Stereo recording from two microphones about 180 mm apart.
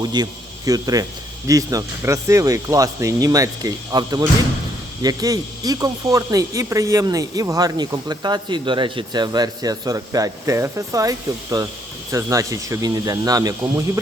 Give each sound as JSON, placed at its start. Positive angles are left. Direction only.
{"t": 0.1, "sound": "speech", "side_deg": -20}